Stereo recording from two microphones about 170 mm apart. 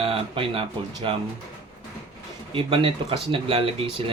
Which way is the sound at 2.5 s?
30° right (ahead or behind).